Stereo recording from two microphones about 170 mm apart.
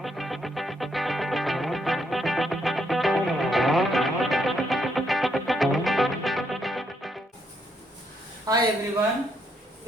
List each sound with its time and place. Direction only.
0.0 s music: centre (ahead or behind)
8.5 s a woman's voice: 20° right (ahead or behind)